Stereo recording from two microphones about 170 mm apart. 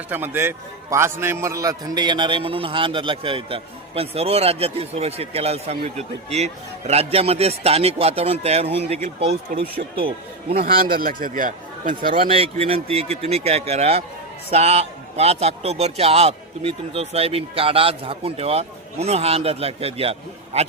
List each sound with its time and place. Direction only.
0.1 s a man's voice: 15° right (ahead or behind); by 9.3 s 35° right (ahead or behind)
9.5 s speech: 45° right (ahead or behind)
10.5 s a man's voice: 60° right (ahead or behind)
12.3 s a man's voice: 35° right (ahead or behind)